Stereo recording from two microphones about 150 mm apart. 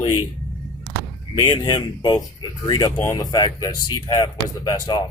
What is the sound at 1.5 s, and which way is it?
Speech, 30° left (ahead or behind).